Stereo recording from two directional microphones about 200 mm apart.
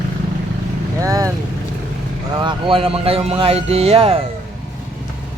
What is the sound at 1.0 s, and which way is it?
Speech, 15° right (ahead or behind).